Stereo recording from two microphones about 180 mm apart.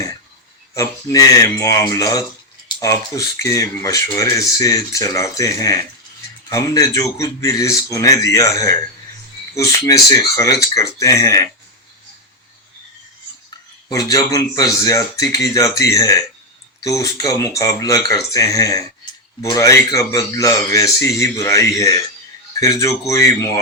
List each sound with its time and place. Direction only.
0.7 s speech: 15° left (ahead or behind)
13.9 s speech: 20° left (ahead or behind)